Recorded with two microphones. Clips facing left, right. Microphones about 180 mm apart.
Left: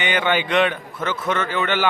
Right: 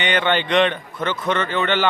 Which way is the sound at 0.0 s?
10° left (ahead or behind).